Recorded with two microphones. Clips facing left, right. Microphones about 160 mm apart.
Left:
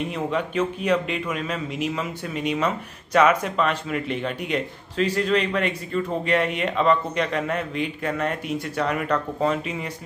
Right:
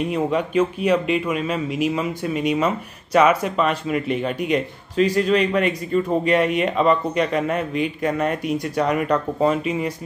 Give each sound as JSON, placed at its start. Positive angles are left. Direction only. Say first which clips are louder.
{"t": 0.1, "sound": "speech", "louder": "right 5 dB", "side_deg": -10}
{"t": 9.4, "sound": "speech", "louder": "right 4 dB", "side_deg": -10}